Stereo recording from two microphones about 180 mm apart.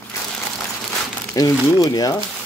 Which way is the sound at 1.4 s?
20° left (ahead or behind).